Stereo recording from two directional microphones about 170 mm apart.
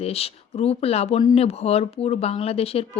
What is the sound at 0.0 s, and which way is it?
A woman's voice, 35° left (ahead or behind).